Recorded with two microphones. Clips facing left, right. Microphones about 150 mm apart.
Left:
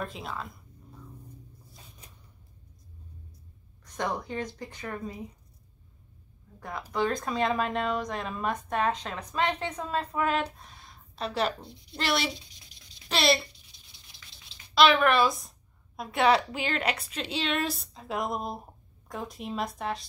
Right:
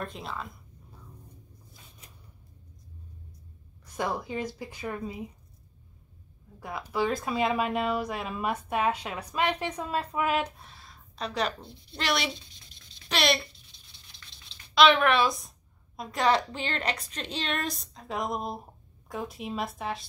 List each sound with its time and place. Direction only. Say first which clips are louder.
0.0 s speech: left 1 dB; centre (ahead or behind)
3.8 s speech: right 1 dB; 5° right (ahead or behind)
6.6 s speech: even; 5° right (ahead or behind)
11.1 s speech: left 1 dB; 5° left (ahead or behind)
14.1 s a sound: right 1 dB; 25° right (ahead or behind)
14.7 s speech: even; centre (ahead or behind)